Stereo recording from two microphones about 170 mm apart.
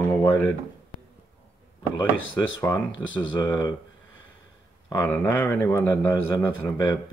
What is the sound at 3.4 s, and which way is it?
Speech, 25° left (ahead or behind).